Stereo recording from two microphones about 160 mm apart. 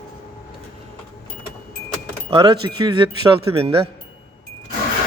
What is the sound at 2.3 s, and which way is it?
Speech, 25° right (ahead or behind).